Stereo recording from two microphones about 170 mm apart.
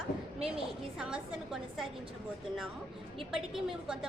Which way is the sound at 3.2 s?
Centre (ahead or behind).